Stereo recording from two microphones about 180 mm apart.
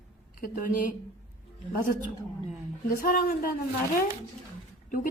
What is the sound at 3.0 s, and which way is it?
Speech, 50° left (ahead or behind).